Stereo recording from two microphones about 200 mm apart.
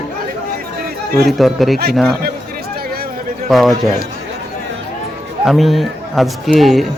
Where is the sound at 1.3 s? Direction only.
Centre (ahead or behind).